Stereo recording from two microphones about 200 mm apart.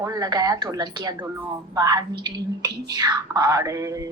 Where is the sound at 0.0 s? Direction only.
20° right (ahead or behind).